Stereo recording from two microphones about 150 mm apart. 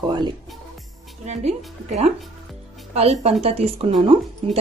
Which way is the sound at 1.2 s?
45° right (ahead or behind).